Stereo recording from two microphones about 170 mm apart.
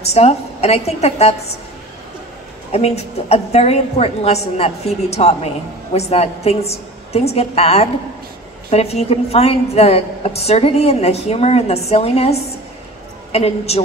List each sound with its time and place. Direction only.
0.0 s a woman's voice: 40° left (ahead or behind)
2.7 s a woman's voice: 40° left (ahead or behind)